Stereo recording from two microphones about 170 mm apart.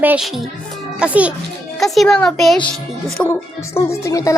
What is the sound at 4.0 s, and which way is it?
Speech, 20° left (ahead or behind).